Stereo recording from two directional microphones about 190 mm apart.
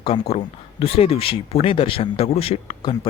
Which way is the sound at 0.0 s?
30° left (ahead or behind).